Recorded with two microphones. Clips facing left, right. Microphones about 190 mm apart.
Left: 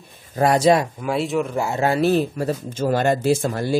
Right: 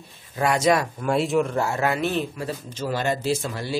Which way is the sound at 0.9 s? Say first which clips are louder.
Even; centre (ahead or behind).